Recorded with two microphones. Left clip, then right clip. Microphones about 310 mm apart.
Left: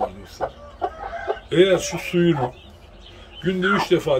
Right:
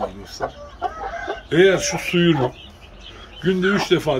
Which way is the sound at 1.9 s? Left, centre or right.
Centre.